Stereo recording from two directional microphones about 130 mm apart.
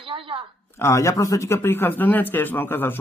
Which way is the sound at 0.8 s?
20° left (ahead or behind).